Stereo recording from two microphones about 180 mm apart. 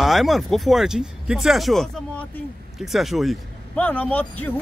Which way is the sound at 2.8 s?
Centre (ahead or behind).